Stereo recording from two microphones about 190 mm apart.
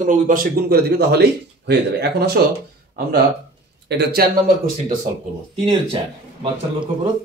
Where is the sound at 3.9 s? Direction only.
60° right (ahead or behind).